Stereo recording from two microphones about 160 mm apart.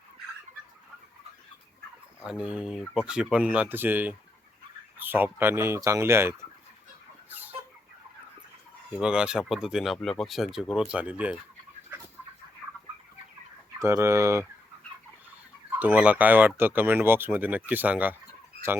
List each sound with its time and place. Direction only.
2.2 s speech: 5° right (ahead or behind)
7.3 s chicken: 10° right (ahead or behind)
9.0 s speech: 5° right (ahead or behind)
13.7 s speech: 15° right (ahead or behind)
15.8 s speech: 10° right (ahead or behind)